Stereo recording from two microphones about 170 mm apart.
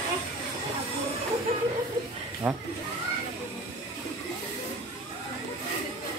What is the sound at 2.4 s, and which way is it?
Speech, 10° right (ahead or behind).